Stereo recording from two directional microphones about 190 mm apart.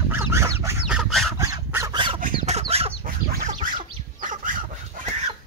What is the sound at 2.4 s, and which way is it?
Chicken, 35° right (ahead or behind).